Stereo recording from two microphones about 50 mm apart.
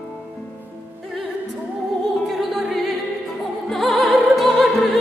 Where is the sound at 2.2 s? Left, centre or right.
Centre.